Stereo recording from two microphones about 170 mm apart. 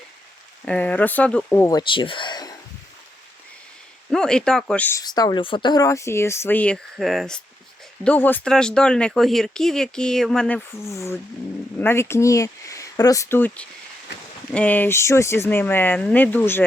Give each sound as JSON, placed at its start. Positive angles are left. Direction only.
{"t": 0.6, "sound": "speech", "side_deg": 5}
{"t": 1.7, "sound": "speech", "side_deg": 30}
{"t": 4.1, "sound": "speech", "side_deg": 5}
{"t": 5.0, "sound": "speech", "side_deg": 25}
{"t": 10.8, "sound": "speech", "side_deg": 15}